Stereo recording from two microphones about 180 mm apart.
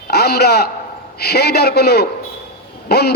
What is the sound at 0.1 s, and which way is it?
A man's voice, 60° left (ahead or behind).